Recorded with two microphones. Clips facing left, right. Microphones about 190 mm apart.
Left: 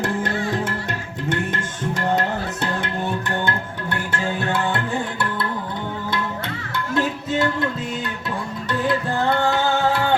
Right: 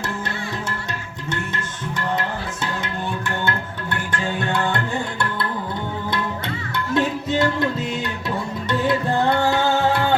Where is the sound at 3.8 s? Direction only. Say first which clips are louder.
Left 1 dB; 5° left (ahead or behind).